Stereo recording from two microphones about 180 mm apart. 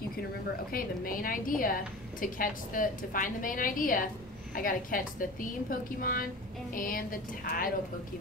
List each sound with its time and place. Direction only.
0.7 s a woman's voice: 55° left (ahead or behind)